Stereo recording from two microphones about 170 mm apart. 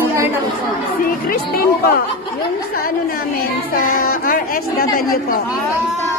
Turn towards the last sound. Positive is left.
turn(degrees=60)  # may be behind; listen again after turning